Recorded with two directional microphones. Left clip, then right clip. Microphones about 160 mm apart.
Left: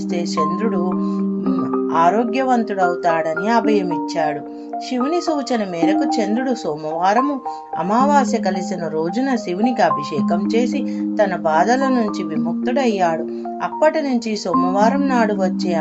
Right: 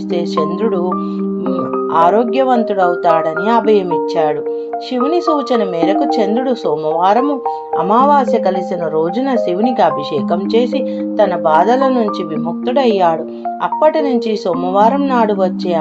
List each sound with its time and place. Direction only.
2.0 s a woman's voice: 25° right (ahead or behind)
7.0 s a woman's voice: 20° right (ahead or behind)
11.2 s a woman's voice: 20° right (ahead or behind)
13.8 s a woman's voice: 20° right (ahead or behind)